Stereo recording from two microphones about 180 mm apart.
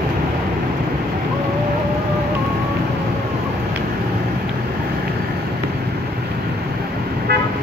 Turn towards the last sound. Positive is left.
turn(degrees=-60)  # may be behind; listen again after turning